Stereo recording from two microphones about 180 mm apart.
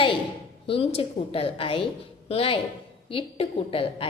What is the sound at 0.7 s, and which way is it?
A woman's voice, 30° left (ahead or behind).